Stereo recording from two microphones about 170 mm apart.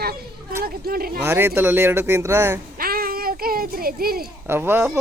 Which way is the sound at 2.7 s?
60° right (ahead or behind).